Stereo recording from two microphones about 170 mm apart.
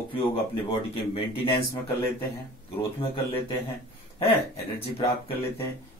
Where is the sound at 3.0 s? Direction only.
30° left (ahead or behind).